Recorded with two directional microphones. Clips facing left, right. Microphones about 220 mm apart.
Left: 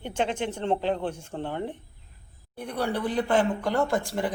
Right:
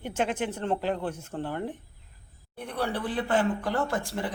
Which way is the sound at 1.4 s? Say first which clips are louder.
Left 1 dB; 20° left (ahead or behind).